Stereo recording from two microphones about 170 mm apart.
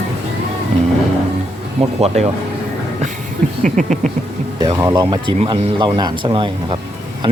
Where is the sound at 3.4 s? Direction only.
50° right (ahead or behind).